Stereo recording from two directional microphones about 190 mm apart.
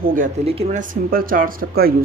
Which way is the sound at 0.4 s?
35° right (ahead or behind).